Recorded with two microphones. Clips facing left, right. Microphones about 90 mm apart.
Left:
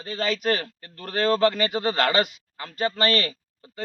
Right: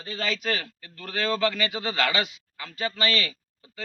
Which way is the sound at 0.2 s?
45° left (ahead or behind).